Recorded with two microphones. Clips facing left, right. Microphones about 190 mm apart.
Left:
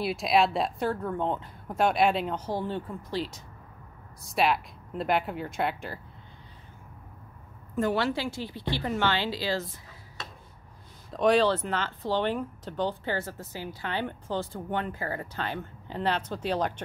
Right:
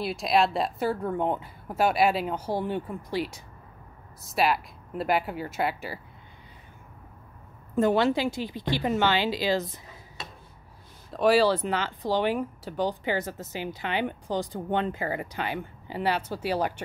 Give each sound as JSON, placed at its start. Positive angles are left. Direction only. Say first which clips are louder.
{"t": 0.0, "sound": "speech", "louder": "even", "side_deg": 0}
{"t": 7.7, "sound": "speech", "louder": "right 4 dB", "side_deg": -20}
{"t": 11.1, "sound": "speech", "louder": "right 1 dB", "side_deg": -5}